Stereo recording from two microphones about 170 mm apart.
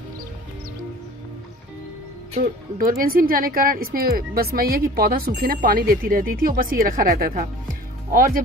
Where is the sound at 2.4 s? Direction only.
60° right (ahead or behind).